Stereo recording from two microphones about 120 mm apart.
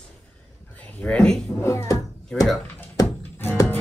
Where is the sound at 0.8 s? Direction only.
15° left (ahead or behind).